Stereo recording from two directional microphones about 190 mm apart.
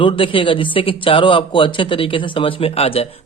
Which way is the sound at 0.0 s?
25° left (ahead or behind).